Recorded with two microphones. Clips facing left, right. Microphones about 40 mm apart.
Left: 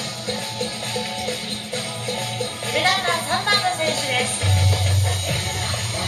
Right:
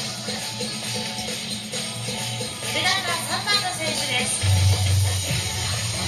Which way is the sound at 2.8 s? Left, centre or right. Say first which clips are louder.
Left 4 dB; left.